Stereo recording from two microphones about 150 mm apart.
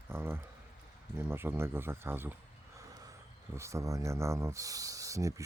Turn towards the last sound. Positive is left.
turn(degrees=-20)  # may be behind; listen again after turning